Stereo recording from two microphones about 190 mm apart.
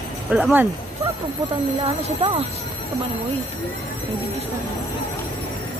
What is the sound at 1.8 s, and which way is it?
Speech, 30° right (ahead or behind).